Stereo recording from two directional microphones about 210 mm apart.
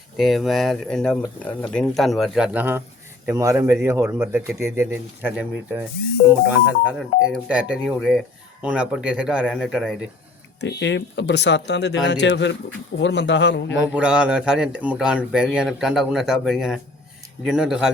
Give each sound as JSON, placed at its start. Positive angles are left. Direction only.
{"t": 0.2, "sound": "a man's voice", "side_deg": 0}
{"t": 7.3, "sound": "a man's voice", "side_deg": -5}
{"t": 10.6, "sound": "speech", "side_deg": 55}
{"t": 13.9, "sound": "a man's voice", "side_deg": -5}